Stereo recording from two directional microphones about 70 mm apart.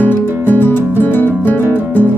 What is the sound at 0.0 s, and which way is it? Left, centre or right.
Music, left.